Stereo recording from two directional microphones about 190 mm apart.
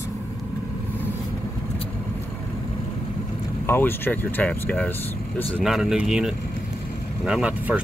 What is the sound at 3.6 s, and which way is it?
Speech, 10° left (ahead or behind).